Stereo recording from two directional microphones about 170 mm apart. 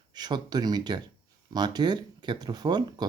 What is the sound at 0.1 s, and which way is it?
Speech, 25° right (ahead or behind).